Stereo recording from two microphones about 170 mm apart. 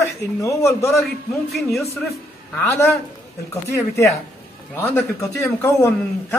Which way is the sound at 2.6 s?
15° left (ahead or behind).